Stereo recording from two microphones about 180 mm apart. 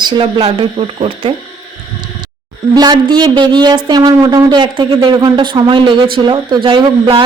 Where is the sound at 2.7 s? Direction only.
20° right (ahead or behind).